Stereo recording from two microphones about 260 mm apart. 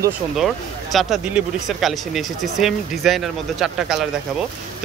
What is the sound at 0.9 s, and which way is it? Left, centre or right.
Speech, centre.